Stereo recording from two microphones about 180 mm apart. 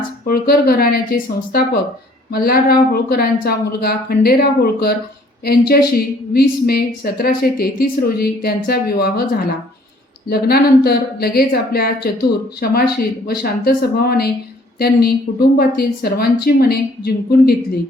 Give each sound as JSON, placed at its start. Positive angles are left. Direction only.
{"t": 0.3, "sound": "a woman's voice", "side_deg": 55}